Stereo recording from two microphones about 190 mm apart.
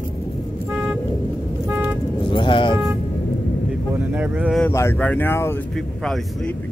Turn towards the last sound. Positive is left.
turn(degrees=10)  # may be behind; listen again after turning